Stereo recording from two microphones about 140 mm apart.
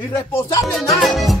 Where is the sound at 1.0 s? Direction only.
Centre (ahead or behind).